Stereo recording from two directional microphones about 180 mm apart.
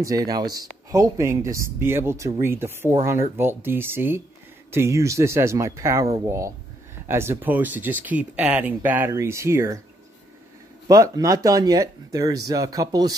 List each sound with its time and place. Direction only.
0.0 s speech: 20° right (ahead or behind)
10.9 s speech: 20° right (ahead or behind)